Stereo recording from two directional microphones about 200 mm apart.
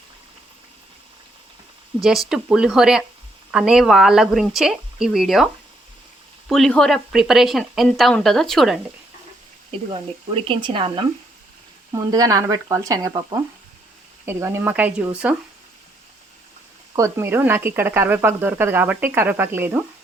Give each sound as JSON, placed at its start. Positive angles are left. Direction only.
{"t": 2.0, "sound": "speech", "side_deg": 0}
{"t": 6.5, "sound": "speech", "side_deg": 0}
{"t": 10.4, "sound": "speech", "side_deg": -25}
{"t": 16.9, "sound": "speech", "side_deg": -15}